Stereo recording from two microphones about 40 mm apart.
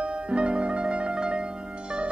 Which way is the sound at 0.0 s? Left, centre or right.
Right.